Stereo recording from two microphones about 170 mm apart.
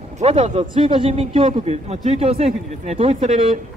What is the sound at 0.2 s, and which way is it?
A man's voice, 40° right (ahead or behind).